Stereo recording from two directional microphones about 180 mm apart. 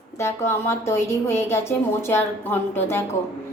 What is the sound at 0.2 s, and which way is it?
A woman's voice, 15° left (ahead or behind).